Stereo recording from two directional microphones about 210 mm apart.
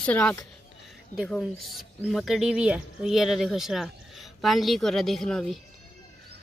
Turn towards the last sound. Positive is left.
turn(degrees=0)  # may be behind; listen again after turning